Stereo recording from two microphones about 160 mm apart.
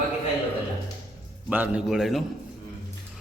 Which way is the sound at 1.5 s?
10° right (ahead or behind).